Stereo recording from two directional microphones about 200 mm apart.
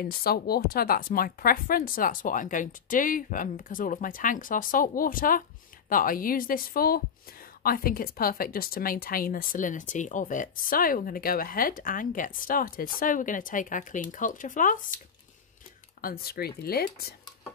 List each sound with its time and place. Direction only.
0.0 s a woman's voice: 50° left (ahead or behind)
16.0 s a woman's voice: 50° left (ahead or behind)